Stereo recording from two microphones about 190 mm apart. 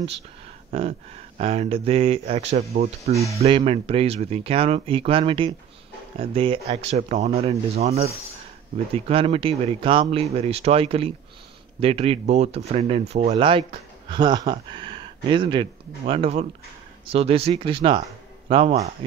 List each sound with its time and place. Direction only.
0.7 s speech: 30° right (ahead or behind)